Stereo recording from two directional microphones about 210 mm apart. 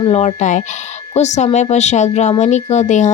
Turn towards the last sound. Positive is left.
turn(degrees=35)  # may be behind; listen again after turning